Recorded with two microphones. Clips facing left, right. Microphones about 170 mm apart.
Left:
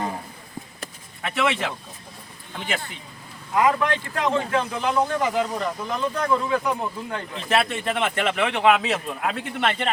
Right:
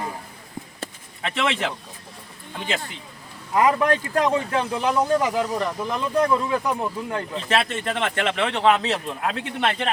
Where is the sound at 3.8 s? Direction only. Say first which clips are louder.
Right 5 dB; 40° right (ahead or behind).